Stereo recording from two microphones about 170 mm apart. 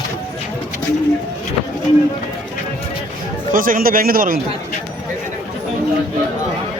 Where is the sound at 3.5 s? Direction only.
55° right (ahead or behind).